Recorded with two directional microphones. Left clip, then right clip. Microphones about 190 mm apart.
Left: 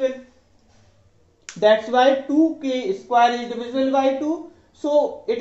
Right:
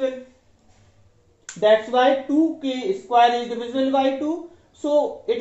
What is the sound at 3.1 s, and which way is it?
Speech, 10° left (ahead or behind).